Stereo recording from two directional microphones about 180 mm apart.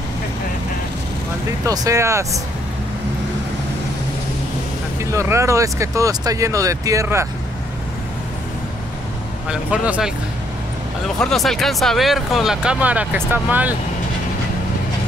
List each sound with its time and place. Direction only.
1.7 s speech: 20° right (ahead or behind)
5.1 s speech: 15° right (ahead or behind)
9.5 s speech: 5° right (ahead or behind)
11.1 s speech: centre (ahead or behind)